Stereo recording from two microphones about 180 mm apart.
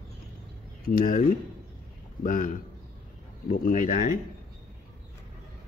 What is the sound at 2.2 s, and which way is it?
Speech, 50° left (ahead or behind).